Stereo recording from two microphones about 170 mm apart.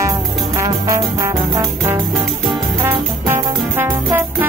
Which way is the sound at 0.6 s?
20° right (ahead or behind).